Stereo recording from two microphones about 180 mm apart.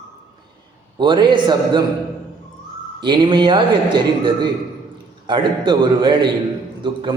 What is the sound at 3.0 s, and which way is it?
A man's voice, 25° right (ahead or behind).